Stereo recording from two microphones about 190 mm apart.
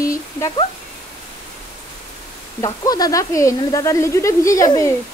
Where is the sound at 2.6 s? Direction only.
20° left (ahead or behind).